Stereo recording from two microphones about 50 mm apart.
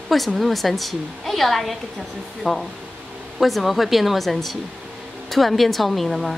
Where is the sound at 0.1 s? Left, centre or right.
Centre.